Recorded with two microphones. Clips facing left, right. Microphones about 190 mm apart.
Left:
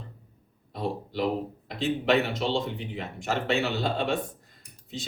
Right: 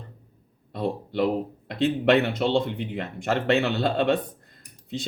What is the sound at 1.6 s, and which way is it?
Speech, 60° right (ahead or behind).